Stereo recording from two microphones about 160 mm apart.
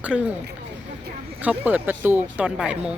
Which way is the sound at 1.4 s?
10° right (ahead or behind).